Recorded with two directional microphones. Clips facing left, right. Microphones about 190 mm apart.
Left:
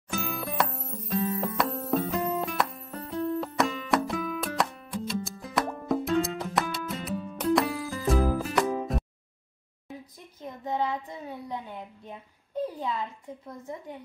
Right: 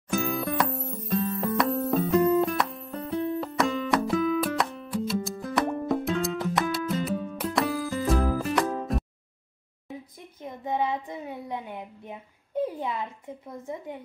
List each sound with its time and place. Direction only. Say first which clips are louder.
0.2 s music: right 1 dB; centre (ahead or behind)
10.4 s child singing: right 2 dB; 20° right (ahead or behind)